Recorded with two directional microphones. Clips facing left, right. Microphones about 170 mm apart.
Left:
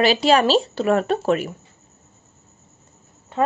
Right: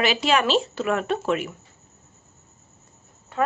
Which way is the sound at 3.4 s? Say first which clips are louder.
Left 3 dB; 30° left (ahead or behind).